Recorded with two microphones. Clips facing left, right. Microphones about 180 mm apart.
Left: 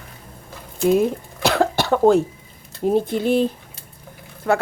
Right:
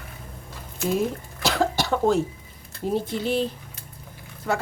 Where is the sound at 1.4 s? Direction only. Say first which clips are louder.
Left 5 dB; 60° left (ahead or behind).